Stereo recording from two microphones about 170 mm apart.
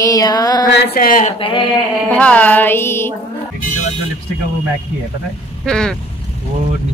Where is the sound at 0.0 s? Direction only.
20° left (ahead or behind).